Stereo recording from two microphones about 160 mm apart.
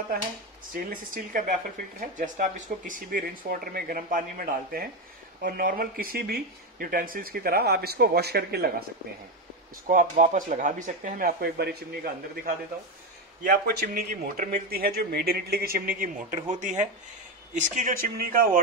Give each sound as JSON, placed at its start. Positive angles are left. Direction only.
{"t": 0.7, "sound": "speech", "side_deg": -60}
{"t": 9.8, "sound": "speech", "side_deg": -60}